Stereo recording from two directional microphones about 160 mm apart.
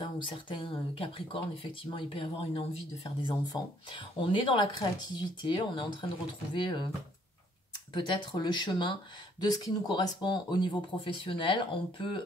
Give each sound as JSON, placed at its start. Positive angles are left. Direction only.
{"t": 0.0, "sound": "speech", "side_deg": 30}
{"t": 7.9, "sound": "speech", "side_deg": 30}